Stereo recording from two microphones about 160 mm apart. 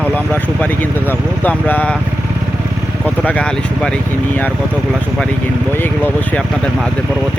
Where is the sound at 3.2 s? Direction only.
5° left (ahead or behind).